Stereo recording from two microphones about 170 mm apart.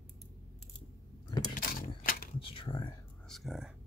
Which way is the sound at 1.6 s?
55° left (ahead or behind).